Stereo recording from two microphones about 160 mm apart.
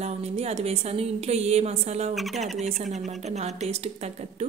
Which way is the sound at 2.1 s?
Centre (ahead or behind).